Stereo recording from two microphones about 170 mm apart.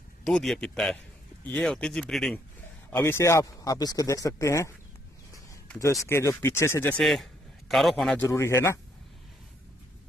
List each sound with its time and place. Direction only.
0.3 s speech: 5° left (ahead or behind)
2.9 s speech: 15° left (ahead or behind)
5.8 s speech: 20° left (ahead or behind)
7.0 s a man's voice: centre (ahead or behind); by 8.7 s 15° left (ahead or behind)